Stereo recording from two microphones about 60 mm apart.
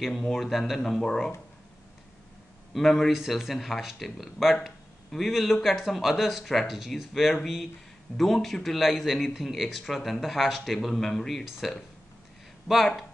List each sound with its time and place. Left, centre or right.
0.3 s speech: centre
2.7 s speech: centre